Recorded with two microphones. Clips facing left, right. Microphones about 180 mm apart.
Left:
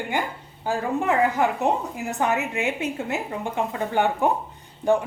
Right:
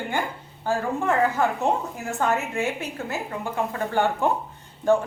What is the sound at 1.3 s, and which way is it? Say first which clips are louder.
A woman's voice: left 1 dB; 15° left (ahead or behind).